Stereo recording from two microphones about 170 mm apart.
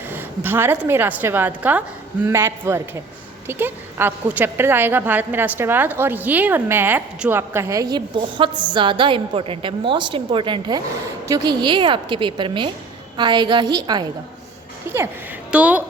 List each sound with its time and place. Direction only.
0.1 s a woman's voice: 10° right (ahead or behind)
14.9 s a woman's voice: 15° right (ahead or behind)